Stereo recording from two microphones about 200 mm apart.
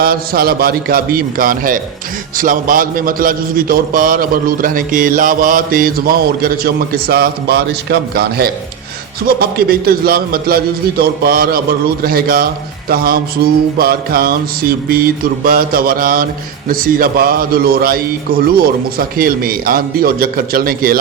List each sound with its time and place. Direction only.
0.0 s a man's voice: 50° right (ahead or behind)